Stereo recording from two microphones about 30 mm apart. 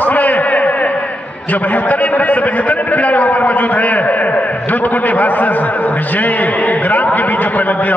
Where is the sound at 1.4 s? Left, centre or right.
Left.